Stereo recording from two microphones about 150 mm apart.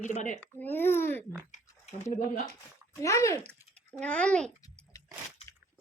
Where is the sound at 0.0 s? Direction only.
55° left (ahead or behind).